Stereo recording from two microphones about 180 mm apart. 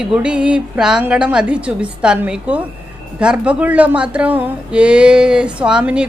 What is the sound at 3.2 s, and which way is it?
Speech, 5° right (ahead or behind).